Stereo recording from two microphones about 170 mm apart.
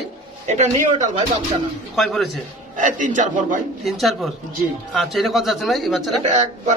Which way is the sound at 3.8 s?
Centre (ahead or behind).